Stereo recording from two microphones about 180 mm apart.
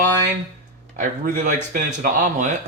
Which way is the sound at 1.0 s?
45° right (ahead or behind).